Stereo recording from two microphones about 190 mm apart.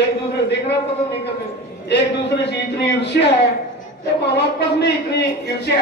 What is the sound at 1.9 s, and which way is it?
Speech, 65° left (ahead or behind).